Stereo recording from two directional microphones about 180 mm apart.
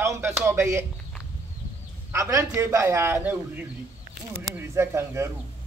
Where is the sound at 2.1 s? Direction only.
15° right (ahead or behind).